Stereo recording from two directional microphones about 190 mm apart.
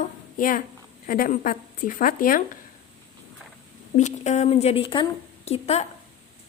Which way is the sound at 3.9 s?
35° left (ahead or behind).